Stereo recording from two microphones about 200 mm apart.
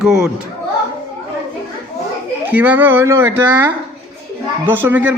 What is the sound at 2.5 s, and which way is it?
Speech, 10° right (ahead or behind).